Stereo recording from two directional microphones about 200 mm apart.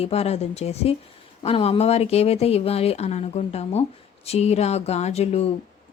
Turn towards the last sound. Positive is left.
turn(degrees=30)  # may be behind; listen again after turning